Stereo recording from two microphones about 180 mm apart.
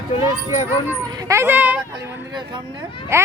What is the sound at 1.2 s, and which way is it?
Speech, 15° right (ahead or behind).